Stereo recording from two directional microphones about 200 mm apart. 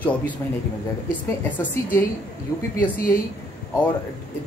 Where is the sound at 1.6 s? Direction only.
10° left (ahead or behind).